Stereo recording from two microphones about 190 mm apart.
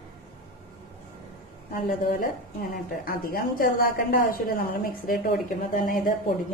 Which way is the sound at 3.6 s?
50° left (ahead or behind).